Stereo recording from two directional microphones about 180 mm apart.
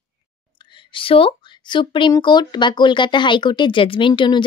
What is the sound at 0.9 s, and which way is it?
Speech, 30° left (ahead or behind).